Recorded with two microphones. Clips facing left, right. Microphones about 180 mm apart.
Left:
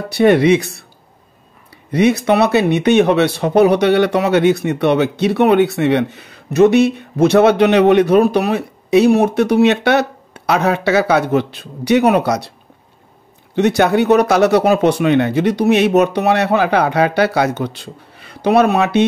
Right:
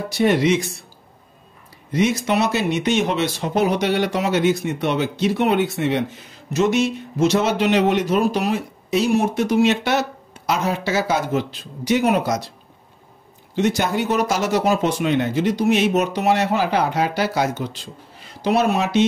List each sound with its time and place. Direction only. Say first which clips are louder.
0.1 s speech: left 7 dB; 60° left (ahead or behind)
1.9 s speech: left 6 dB; 65° left (ahead or behind)
13.6 s speech: left 7 dB; 65° left (ahead or behind)